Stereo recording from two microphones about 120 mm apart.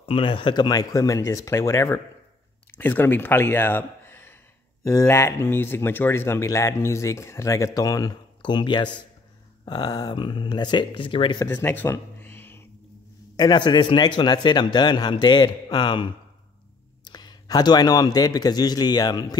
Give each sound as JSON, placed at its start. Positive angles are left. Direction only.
{"t": 0.0, "sound": "a man's voice", "side_deg": 50}
{"t": 11.4, "sound": "a sound", "side_deg": 20}
{"t": 13.4, "sound": "a man's voice", "side_deg": 35}